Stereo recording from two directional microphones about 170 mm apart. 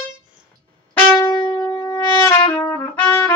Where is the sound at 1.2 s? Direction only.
25° left (ahead or behind).